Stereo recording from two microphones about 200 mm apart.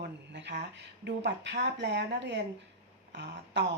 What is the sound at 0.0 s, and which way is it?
Speech, 60° right (ahead or behind).